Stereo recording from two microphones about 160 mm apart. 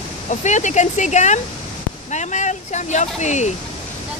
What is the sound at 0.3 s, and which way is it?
Speech, 50° left (ahead or behind).